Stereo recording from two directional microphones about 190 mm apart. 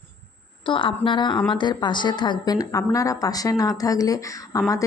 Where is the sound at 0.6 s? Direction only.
25° left (ahead or behind).